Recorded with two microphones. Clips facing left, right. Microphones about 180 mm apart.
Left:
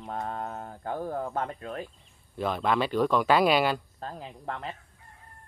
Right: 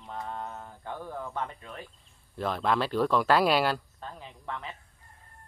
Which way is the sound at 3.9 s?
40° left (ahead or behind).